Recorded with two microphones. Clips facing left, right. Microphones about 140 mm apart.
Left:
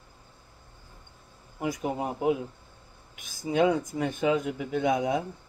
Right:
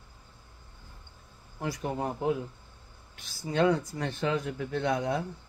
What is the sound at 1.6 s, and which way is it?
Speech, 10° left (ahead or behind).